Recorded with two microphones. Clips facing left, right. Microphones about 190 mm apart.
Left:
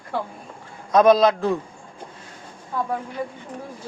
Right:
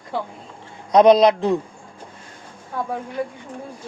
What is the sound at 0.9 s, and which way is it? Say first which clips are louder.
Speech: right 3 dB; 20° right (ahead or behind).